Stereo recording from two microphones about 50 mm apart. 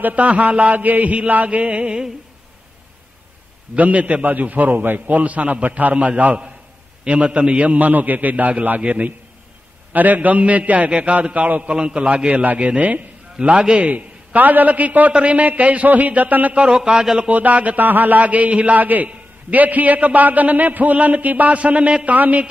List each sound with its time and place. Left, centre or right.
0.0 s a man's voice: right
3.7 s a man's voice: right
11.7 s a man's voice: right
13.8 s a man's voice: right; by 17.1 s centre
17.2 s a man's voice: right